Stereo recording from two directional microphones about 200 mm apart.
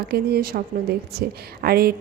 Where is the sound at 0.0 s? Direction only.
50° right (ahead or behind).